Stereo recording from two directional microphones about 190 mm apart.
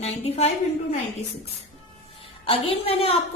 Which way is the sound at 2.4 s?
30° left (ahead or behind).